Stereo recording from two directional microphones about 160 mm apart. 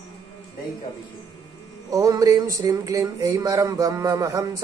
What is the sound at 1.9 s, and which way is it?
Speech, 20° right (ahead or behind).